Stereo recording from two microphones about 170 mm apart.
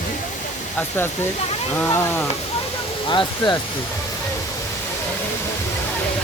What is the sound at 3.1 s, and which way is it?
Speech, 25° left (ahead or behind).